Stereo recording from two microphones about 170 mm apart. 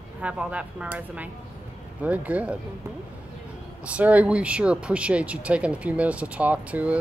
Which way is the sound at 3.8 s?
10° right (ahead or behind).